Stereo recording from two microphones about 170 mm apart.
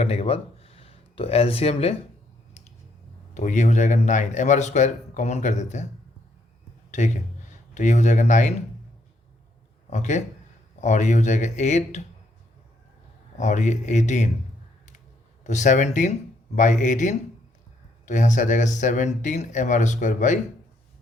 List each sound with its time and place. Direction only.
0.0 s a sound: 40° left (ahead or behind)
3.3 s a man's voice: 45° left (ahead or behind)
6.9 s a man's voice: 45° left (ahead or behind)
9.9 s a man's voice: 45° left (ahead or behind)
13.4 s a man's voice: 45° left (ahead or behind)
15.4 s a man's voice: 45° left (ahead or behind)